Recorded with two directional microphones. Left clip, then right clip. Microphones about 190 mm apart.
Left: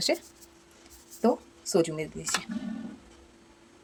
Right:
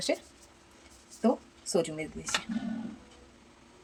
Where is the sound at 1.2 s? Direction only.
35° left (ahead or behind).